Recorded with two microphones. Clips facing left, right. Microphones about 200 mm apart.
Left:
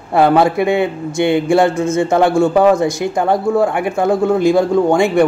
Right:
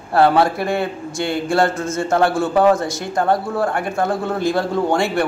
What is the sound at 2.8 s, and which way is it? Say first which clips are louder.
Speech: left 5 dB; 20° left (ahead or behind).